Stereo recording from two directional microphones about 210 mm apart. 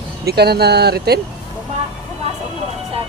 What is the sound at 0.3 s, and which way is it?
Speech, 50° right (ahead or behind).